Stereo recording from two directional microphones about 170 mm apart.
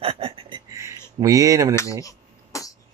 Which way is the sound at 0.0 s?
35° right (ahead or behind).